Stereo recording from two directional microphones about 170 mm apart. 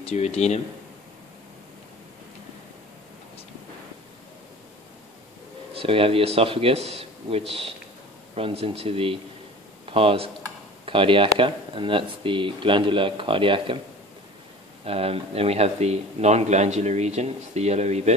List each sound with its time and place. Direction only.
0.0 s speech: 40° left (ahead or behind)
5.7 s speech: 35° right (ahead or behind)
14.9 s speech: 35° right (ahead or behind)